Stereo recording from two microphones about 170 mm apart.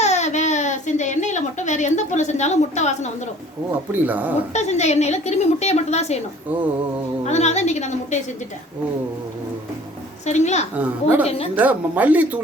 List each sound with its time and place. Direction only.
0.0 s speech: 40° left (ahead or behind)
4.0 s speech: 10° right (ahead or behind)
4.5 s a woman's voice: 40° left (ahead or behind)
7.3 s a woman's voice: 40° left (ahead or behind)
10.2 s a woman's voice: 40° left (ahead or behind)
10.8 s speech: 10° right (ahead or behind)